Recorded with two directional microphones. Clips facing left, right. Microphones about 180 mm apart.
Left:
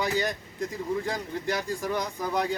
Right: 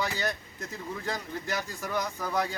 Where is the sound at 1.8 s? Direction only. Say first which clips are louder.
Left 3 dB; 15° left (ahead or behind).